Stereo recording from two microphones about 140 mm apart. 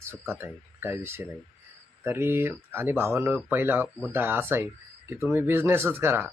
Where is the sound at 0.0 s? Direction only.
15° right (ahead or behind).